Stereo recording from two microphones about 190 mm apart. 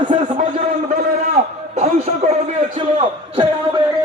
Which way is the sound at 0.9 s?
40° right (ahead or behind).